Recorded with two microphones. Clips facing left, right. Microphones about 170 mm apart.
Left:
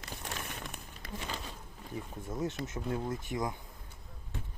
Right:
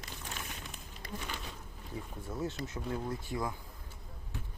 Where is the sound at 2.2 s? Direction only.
20° left (ahead or behind).